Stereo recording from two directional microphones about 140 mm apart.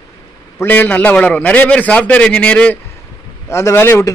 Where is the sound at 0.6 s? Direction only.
15° left (ahead or behind).